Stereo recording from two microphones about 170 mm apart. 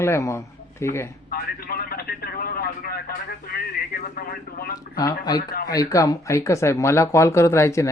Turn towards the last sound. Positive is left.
turn(degrees=15)  # may be behind; listen again after turning